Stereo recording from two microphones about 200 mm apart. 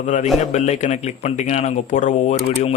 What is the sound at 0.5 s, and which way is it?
Speech, 35° left (ahead or behind).